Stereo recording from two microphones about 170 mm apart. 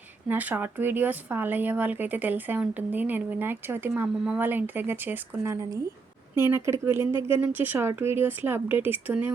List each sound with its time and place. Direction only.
0.3 s speech: 10° right (ahead or behind)